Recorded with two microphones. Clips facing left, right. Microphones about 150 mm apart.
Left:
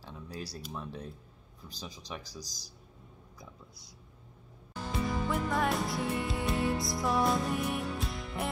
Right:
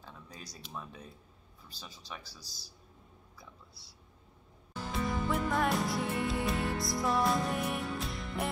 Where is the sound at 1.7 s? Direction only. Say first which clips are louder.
Left 4 dB; 40° left (ahead or behind).